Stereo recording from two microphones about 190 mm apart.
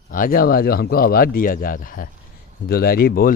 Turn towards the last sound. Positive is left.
turn(degrees=50)  # may be behind; listen again after turning